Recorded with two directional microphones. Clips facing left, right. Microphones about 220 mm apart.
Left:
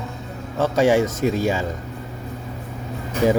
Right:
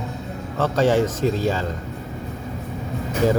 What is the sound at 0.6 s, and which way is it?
A man's voice, 10° left (ahead or behind).